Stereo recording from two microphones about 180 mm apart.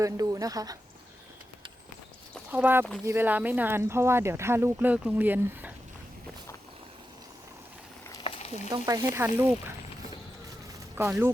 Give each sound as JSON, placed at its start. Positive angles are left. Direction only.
{"t": 0.0, "sound": "speech", "side_deg": -20}
{"t": 2.5, "sound": "speech", "side_deg": -10}
{"t": 8.2, "sound": "frying", "side_deg": 35}
{"t": 8.7, "sound": "speech", "side_deg": -20}
{"t": 10.9, "sound": "speech", "side_deg": -15}